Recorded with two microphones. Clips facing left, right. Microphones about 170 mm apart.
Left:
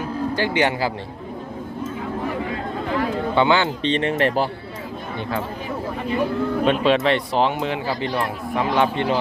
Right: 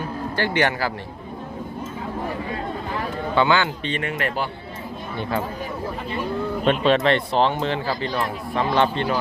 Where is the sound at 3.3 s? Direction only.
20° left (ahead or behind).